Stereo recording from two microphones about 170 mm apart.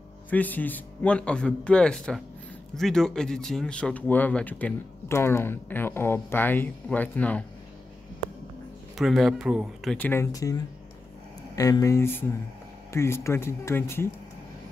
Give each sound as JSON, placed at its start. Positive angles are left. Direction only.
{"t": 0.3, "sound": "speech", "side_deg": 10}
{"t": 8.9, "sound": "speech", "side_deg": 0}
{"t": 9.9, "sound": "speech", "side_deg": 10}